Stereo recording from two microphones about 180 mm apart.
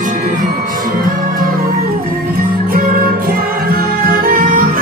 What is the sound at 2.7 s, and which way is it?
Music, 50° right (ahead or behind).